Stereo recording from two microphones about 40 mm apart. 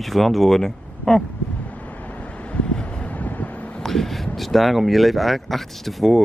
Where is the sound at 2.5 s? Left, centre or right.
Left.